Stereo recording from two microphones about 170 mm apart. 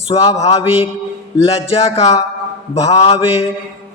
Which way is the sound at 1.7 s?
40° left (ahead or behind).